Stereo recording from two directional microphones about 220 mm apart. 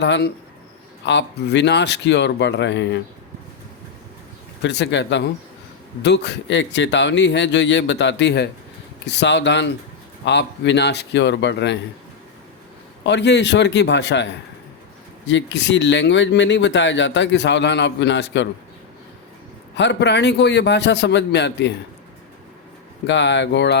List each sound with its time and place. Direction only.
0.0 s speech: 50° left (ahead or behind)
4.6 s speech: 55° left (ahead or behind)
13.1 s speech: 50° left (ahead or behind)
15.3 s speech: 55° left (ahead or behind)
19.7 s speech: 55° left (ahead or behind)
23.0 s speech: 55° left (ahead or behind)